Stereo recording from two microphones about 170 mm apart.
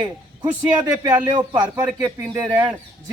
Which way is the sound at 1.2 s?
10° right (ahead or behind).